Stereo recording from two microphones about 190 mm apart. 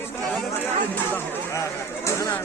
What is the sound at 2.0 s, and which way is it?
Chatter, 15° left (ahead or behind).